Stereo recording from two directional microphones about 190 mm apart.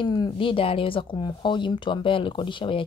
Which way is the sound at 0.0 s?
25° left (ahead or behind).